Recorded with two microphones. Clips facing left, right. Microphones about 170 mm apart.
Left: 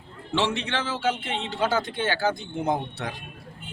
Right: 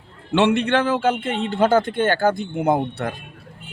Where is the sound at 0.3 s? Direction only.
60° right (ahead or behind).